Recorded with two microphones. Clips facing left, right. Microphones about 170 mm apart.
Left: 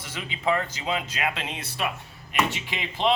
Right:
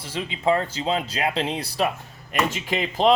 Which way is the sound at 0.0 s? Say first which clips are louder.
Right 4 dB; 30° right (ahead or behind).